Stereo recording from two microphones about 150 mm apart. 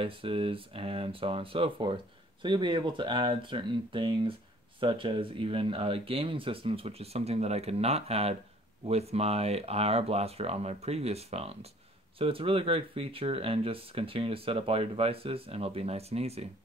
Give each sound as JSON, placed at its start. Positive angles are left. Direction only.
{"t": 0.0, "sound": "speech", "side_deg": -35}